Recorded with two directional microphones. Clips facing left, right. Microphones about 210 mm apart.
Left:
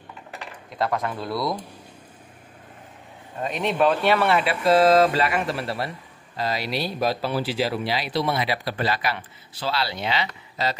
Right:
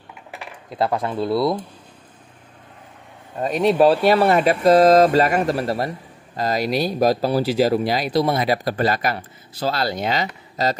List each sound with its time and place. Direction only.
0.7 s speech: 30° right (ahead or behind)
3.3 s speech: 40° right (ahead or behind)